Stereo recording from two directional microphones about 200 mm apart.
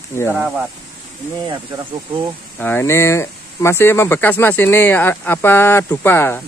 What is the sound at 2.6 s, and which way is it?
Speech, 10° left (ahead or behind).